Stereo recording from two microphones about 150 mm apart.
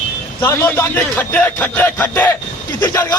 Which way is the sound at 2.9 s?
20° left (ahead or behind).